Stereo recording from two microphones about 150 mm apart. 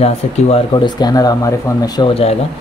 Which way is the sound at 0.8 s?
25° left (ahead or behind).